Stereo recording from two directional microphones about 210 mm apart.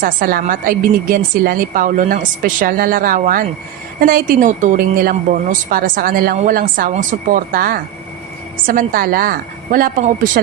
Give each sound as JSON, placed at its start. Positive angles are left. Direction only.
{"t": 0.0, "sound": "a woman's voice", "side_deg": -45}